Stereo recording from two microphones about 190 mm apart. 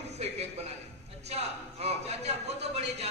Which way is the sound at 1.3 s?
35° right (ahead or behind).